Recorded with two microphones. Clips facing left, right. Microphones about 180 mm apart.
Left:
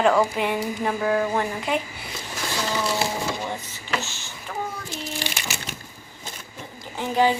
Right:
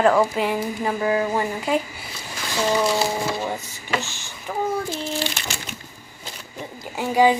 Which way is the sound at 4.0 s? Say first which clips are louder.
Right 1 dB; 15° right (ahead or behind).